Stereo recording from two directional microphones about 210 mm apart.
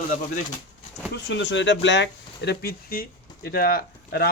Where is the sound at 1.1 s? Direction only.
55° left (ahead or behind).